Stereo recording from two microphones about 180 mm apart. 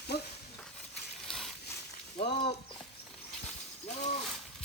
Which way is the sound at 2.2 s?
35° left (ahead or behind).